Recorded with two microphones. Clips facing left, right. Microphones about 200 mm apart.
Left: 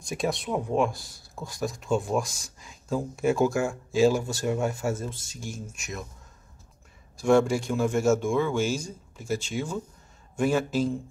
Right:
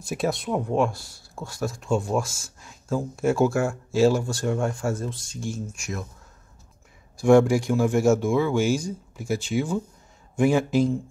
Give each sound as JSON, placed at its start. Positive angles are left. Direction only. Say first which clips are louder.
{"t": 0.0, "sound": "speech", "louder": "right 3 dB", "side_deg": -5}
{"t": 2.2, "sound": "speech", "louder": "right 2 dB", "side_deg": 15}
{"t": 2.6, "sound": "speech", "louder": "right 2 dB", "side_deg": 0}
{"t": 7.2, "sound": "speech", "louder": "right 4 dB", "side_deg": -10}